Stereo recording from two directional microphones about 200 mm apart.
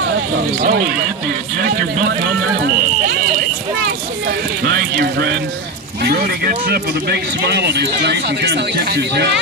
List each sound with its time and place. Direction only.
0.6 s speech: 50° right (ahead or behind)
4.6 s a sound: 55° right (ahead or behind)
6.0 s speech: 50° right (ahead or behind)